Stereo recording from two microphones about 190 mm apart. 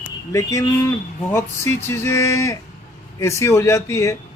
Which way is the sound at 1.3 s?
15° left (ahead or behind).